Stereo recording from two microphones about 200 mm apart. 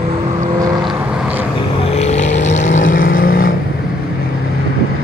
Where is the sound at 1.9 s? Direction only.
35° left (ahead or behind).